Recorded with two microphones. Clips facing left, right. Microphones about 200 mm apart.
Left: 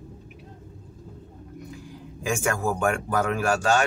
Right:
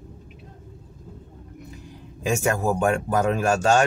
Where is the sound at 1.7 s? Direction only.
20° right (ahead or behind).